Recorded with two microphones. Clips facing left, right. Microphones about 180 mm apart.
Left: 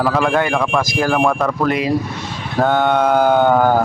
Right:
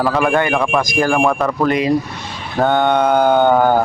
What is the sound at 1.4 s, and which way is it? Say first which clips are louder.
Speech: right 1 dB; centre (ahead or behind).